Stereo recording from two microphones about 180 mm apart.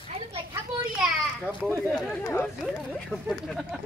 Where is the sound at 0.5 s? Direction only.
5° right (ahead or behind).